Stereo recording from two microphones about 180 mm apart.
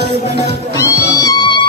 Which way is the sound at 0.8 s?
15° left (ahead or behind).